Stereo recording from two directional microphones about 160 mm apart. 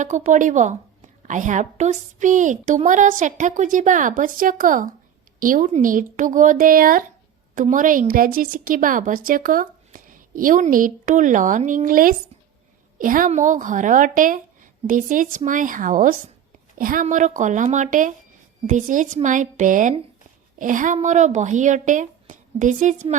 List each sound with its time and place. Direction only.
0.0 s a woman's voice: 50° right (ahead or behind)